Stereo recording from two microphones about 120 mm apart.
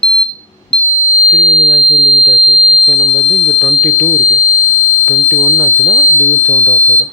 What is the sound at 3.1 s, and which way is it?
Alarm, centre (ahead or behind).